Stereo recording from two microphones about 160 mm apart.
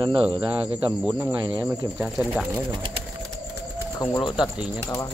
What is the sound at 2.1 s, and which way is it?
Speech, centre (ahead or behind).